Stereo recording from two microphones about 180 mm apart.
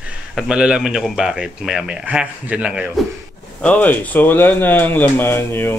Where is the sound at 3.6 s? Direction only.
10° left (ahead or behind).